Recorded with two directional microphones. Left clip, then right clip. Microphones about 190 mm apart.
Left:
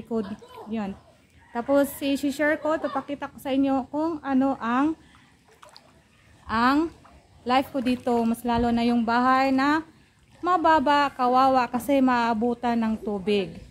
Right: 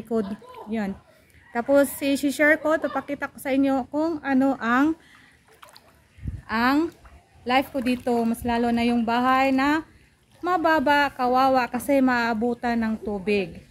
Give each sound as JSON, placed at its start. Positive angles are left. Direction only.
{"t": 0.1, "sound": "a woman's voice", "side_deg": -25}
{"t": 6.4, "sound": "a woman's voice", "side_deg": 0}